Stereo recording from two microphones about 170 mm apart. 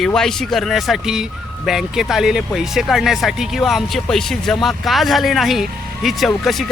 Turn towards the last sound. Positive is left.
turn(degrees=0)  # may be behind; listen again after turning